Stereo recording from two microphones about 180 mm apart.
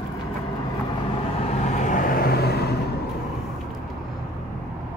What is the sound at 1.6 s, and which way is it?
Vehicle, 45° left (ahead or behind).